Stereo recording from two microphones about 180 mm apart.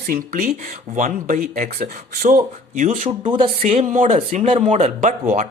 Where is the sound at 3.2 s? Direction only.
30° right (ahead or behind).